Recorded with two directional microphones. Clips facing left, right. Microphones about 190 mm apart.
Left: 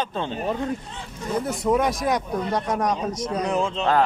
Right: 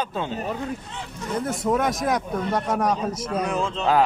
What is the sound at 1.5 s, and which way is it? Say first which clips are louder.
A man's voice: left 1 dB; centre (ahead or behind).